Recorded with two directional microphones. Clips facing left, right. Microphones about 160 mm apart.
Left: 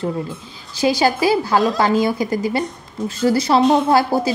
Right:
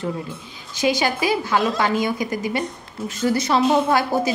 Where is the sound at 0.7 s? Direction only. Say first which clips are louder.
Left 4 dB; 35° left (ahead or behind).